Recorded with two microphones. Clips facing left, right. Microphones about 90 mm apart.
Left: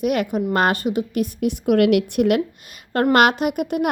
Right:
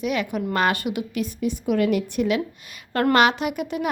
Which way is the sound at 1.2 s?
60° left (ahead or behind).